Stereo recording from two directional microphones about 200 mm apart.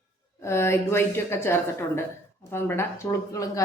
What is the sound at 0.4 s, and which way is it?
A woman's voice, 15° left (ahead or behind).